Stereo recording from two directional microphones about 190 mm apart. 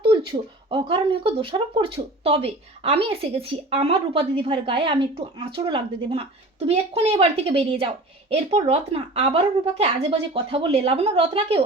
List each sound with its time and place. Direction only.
0.1 s speech: 25° right (ahead or behind)